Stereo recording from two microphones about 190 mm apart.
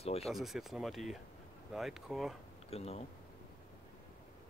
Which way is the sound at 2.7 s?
35° left (ahead or behind).